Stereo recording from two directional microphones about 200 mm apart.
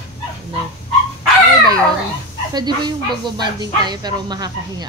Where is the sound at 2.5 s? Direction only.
20° right (ahead or behind).